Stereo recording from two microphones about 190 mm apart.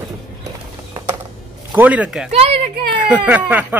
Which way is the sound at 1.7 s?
10° right (ahead or behind).